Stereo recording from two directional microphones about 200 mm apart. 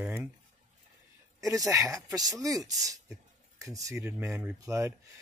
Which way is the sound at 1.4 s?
15° right (ahead or behind).